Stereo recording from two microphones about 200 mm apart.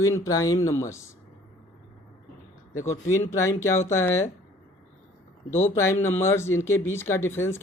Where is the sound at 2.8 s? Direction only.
15° left (ahead or behind).